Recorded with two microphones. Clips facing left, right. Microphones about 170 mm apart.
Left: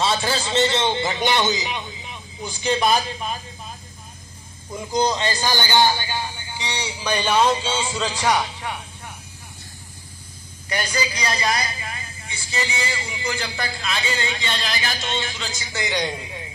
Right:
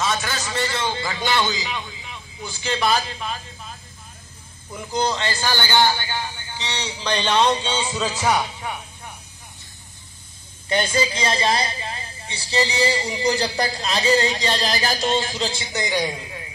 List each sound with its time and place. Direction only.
0.0 s a man's voice: 30° left (ahead or behind)
4.7 s speech: 15° left (ahead or behind); by 8.7 s 5° right (ahead or behind)
10.7 s speech: 25° right (ahead or behind)
15.7 s a man's voice: 15° right (ahead or behind)